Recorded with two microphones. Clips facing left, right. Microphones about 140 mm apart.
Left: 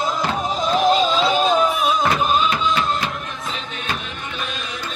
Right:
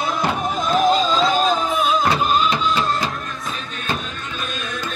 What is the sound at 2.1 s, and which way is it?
Music, 30° right (ahead or behind).